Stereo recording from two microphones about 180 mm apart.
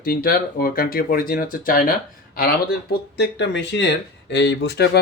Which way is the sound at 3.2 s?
70° left (ahead or behind).